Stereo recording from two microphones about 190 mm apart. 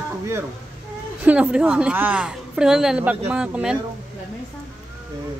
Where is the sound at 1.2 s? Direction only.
5° right (ahead or behind).